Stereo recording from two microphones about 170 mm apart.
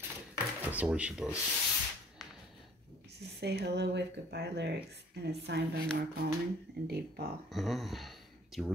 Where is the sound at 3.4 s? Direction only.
80° right.